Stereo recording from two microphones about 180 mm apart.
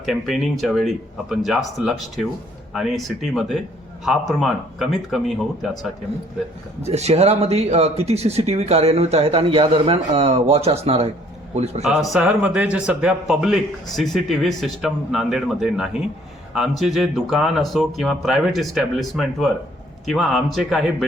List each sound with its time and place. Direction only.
0.0 s speech: centre (ahead or behind)
6.8 s speech: 35° right (ahead or behind)
11.8 s speech: centre (ahead or behind)